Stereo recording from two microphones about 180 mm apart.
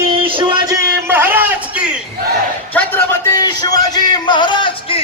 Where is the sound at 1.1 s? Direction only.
10° right (ahead or behind).